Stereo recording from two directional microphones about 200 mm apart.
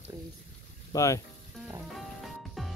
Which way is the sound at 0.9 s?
15° left (ahead or behind).